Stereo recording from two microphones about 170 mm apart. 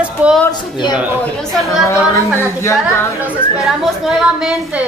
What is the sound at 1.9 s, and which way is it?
Speech, 15° left (ahead or behind).